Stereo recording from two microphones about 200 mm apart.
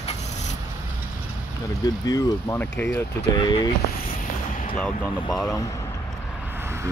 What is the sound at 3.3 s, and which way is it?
Speech, 20° left (ahead or behind).